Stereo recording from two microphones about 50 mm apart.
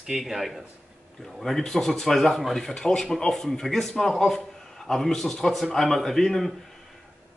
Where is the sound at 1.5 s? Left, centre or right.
Centre.